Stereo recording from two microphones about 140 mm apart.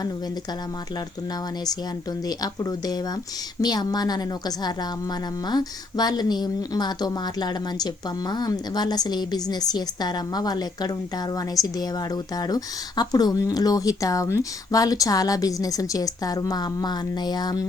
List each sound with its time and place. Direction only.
0.9 s a woman's voice: 30° left (ahead or behind)